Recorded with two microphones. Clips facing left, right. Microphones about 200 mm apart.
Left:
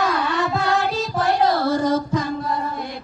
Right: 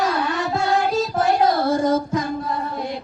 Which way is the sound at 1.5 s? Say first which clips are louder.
Right 1 dB; 50° right (ahead or behind).